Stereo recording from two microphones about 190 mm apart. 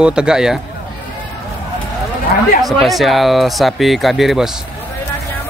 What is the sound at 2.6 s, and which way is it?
Speech, centre (ahead or behind).